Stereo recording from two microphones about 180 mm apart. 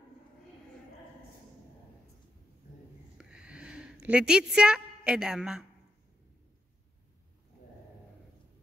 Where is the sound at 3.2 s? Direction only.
5° right (ahead or behind).